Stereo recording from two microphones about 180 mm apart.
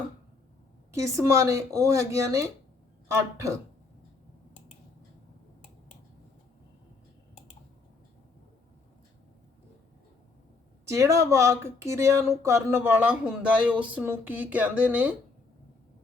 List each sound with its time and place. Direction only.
0.9 s speech: 15° right (ahead or behind)
10.8 s speech: 15° right (ahead or behind)